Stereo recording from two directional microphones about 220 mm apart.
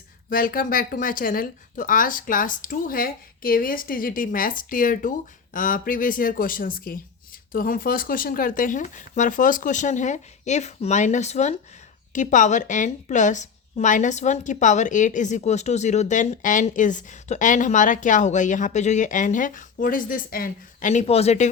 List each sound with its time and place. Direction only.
0.3 s a woman's voice: 40° left (ahead or behind)